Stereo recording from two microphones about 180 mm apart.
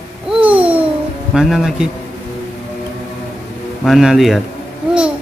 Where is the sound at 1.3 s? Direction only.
Centre (ahead or behind).